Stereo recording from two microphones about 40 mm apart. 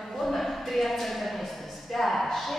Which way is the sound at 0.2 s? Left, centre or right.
Centre.